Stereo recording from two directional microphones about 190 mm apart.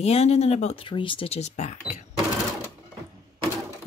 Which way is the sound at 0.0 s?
35° left (ahead or behind).